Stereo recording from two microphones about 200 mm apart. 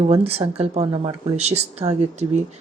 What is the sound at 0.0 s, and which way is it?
Speech, 30° right (ahead or behind).